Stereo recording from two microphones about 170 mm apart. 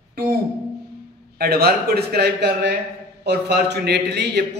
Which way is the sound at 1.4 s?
70° right (ahead or behind).